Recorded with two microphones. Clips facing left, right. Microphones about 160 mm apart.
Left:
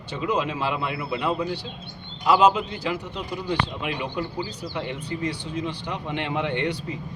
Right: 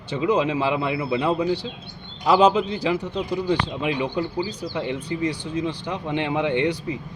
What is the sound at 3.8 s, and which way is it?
Speech, 25° right (ahead or behind).